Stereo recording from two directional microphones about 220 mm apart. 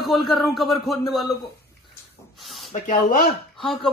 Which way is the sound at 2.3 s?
Centre (ahead or behind).